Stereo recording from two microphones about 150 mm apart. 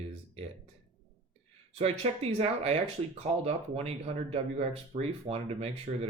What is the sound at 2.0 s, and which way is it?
Speech, 45° right (ahead or behind).